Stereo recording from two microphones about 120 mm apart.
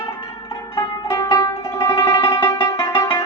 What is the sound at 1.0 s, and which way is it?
Music, 30° left (ahead or behind).